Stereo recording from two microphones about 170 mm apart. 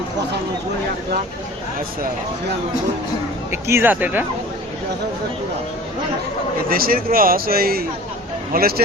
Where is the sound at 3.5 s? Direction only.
15° right (ahead or behind).